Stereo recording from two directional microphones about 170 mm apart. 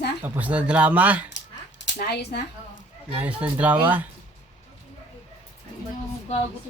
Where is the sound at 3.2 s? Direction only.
10° right (ahead or behind).